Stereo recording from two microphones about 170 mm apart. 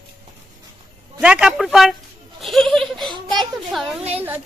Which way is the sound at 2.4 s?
Centre (ahead or behind).